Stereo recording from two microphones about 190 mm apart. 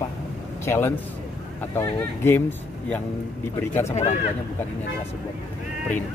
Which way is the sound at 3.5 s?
15° left (ahead or behind).